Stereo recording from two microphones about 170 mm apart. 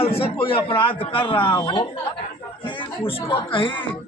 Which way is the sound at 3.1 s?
30° left (ahead or behind).